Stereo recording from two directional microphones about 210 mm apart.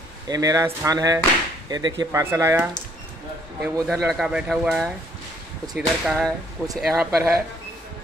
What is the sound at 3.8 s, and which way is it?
Speech, centre (ahead or behind).